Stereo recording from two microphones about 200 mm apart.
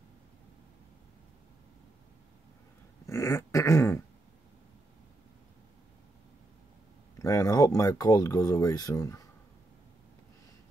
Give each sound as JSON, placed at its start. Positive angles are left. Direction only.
{"t": 3.1, "sound": "dog", "side_deg": 15}
{"t": 7.2, "sound": "speech", "side_deg": 15}